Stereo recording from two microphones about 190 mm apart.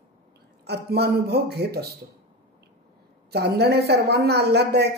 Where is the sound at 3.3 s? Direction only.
60° right (ahead or behind).